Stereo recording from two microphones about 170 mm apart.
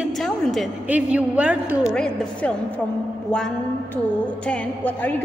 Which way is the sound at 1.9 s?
5° left (ahead or behind).